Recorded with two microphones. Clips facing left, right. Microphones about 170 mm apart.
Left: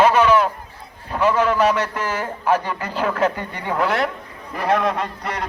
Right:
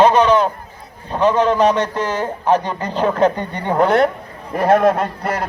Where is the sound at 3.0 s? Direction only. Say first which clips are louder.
Right 5 dB; 30° right (ahead or behind).